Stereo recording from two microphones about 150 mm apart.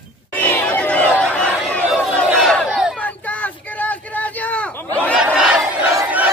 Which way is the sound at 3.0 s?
10° left (ahead or behind).